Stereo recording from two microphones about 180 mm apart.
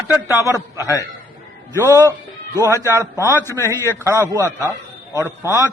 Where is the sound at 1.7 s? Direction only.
15° right (ahead or behind).